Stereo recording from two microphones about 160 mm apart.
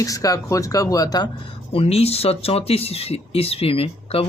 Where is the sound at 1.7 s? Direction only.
40° left (ahead or behind).